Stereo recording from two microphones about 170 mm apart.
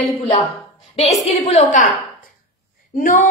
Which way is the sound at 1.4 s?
45° left (ahead or behind).